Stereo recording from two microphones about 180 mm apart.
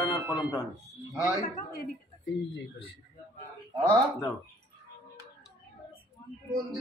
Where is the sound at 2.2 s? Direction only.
75° left (ahead or behind).